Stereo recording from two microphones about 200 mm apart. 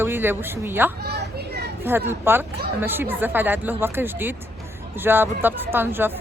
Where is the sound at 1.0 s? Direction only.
55° right (ahead or behind).